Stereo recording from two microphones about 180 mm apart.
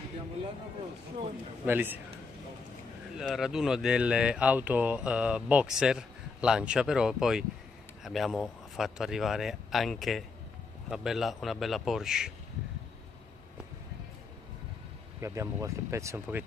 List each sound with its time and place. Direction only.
1.7 s speech: 10° right (ahead or behind)
3.2 s speech: 5° right (ahead or behind)
15.1 s speech: 15° right (ahead or behind)